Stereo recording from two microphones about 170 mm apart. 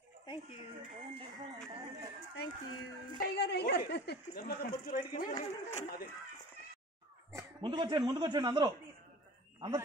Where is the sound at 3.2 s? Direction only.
75° left (ahead or behind); by 5.4 s 55° left (ahead or behind).